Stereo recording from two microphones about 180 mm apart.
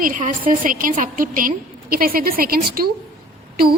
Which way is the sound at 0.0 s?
50° right (ahead or behind).